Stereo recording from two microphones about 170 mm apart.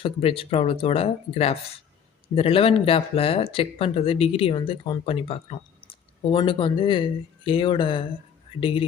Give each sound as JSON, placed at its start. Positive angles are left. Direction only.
{"t": 0.0, "sound": "speech", "side_deg": 35}